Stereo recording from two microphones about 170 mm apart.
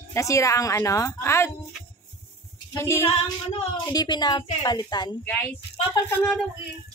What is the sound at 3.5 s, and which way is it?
A woman's voice, 25° left (ahead or behind).